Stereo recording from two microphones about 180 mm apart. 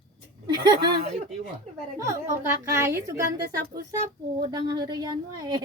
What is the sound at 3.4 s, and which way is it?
Speech, 65° right (ahead or behind).